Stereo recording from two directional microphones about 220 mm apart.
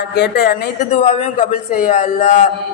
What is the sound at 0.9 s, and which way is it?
A man's voice, 30° left (ahead or behind).